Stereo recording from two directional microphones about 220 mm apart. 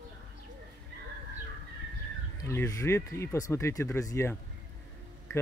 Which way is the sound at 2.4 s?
15° left (ahead or behind).